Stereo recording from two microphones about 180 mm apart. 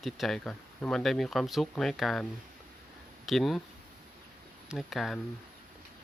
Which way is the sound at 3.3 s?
Centre (ahead or behind).